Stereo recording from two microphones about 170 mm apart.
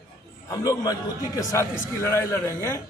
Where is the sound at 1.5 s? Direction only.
15° left (ahead or behind).